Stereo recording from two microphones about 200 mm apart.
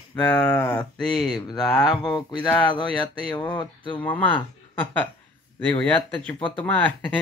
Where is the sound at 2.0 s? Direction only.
20° left (ahead or behind).